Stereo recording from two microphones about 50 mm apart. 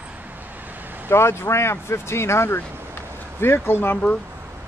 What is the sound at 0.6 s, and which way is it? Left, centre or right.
Vehicle, right.